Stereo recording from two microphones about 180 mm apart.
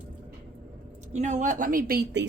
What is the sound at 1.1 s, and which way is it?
A woman's voice, 40° right (ahead or behind).